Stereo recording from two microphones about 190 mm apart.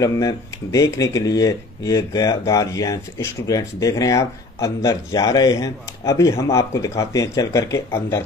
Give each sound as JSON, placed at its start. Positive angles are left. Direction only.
{"t": 0.0, "sound": "speech", "side_deg": 15}